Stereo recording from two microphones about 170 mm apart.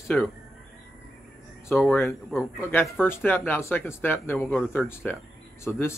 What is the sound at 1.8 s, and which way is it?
Speech, centre (ahead or behind).